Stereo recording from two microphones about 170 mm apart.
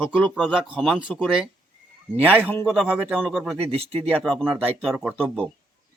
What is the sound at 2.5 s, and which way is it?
Speech, 10° left (ahead or behind).